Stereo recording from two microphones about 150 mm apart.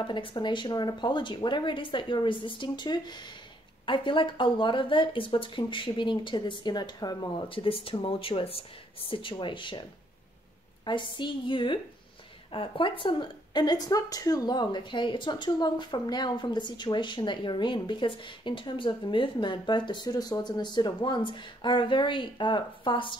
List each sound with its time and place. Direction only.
0.0 s a woman's voice: 35° left (ahead or behind)
10.9 s a woman's voice: 30° left (ahead or behind)